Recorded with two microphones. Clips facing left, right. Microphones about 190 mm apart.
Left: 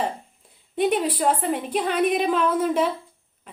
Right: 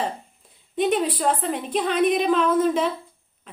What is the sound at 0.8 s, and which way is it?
A woman's voice, 10° left (ahead or behind).